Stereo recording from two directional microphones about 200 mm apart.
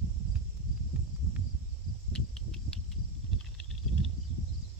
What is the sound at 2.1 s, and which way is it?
Cricket, 5° left (ahead or behind).